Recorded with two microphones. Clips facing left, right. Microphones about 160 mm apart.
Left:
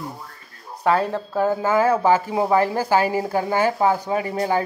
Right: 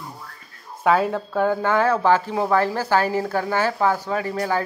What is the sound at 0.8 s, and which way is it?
Speech, centre (ahead or behind).